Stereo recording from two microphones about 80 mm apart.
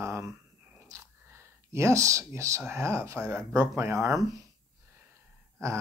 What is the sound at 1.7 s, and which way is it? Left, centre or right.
Speech, right.